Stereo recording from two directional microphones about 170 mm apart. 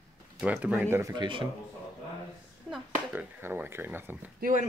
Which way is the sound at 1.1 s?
30° right (ahead or behind).